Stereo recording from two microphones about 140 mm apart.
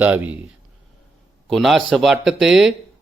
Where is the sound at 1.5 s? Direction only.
Centre (ahead or behind).